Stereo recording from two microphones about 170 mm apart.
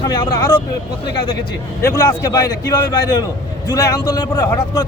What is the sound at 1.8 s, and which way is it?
Speech, 20° left (ahead or behind).